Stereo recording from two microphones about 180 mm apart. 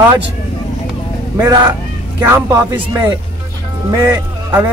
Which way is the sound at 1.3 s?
20° right (ahead or behind).